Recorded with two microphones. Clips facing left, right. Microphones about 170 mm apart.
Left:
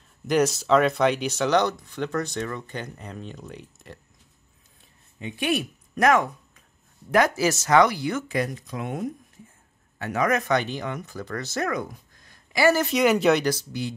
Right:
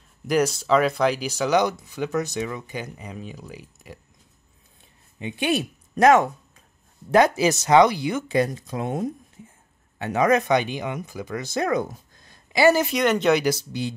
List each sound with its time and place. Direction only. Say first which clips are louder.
0.3 s speech: even; centre (ahead or behind)
5.2 s speech: right 2 dB; 25° right (ahead or behind)
8.3 s speech: right 5 dB; 30° right (ahead or behind); by 11.6 s 10° right (ahead or behind)
11.6 s speech: right 5 dB; 25° right (ahead or behind)
12.3 s a sound: right 3 dB; 20° right (ahead or behind)
12.9 s speech: even; 5° left (ahead or behind)
13.7 s speech: right 2 dB; 25° right (ahead or behind)